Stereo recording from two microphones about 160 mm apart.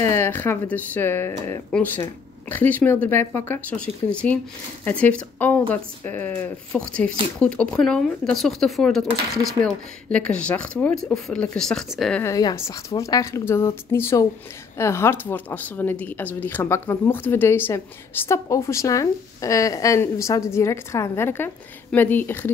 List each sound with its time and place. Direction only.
0.1 s speech: 15° left (ahead or behind)
12.2 s speech: 20° left (ahead or behind)